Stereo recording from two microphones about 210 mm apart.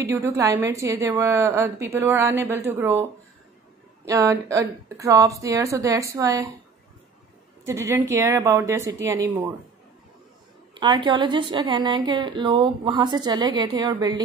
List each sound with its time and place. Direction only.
0.0 s a woman's voice: 15° right (ahead or behind)
4.1 s a woman's voice: 15° right (ahead or behind)
7.6 s a woman's voice: 15° right (ahead or behind)
10.7 s a woman's voice: 20° right (ahead or behind)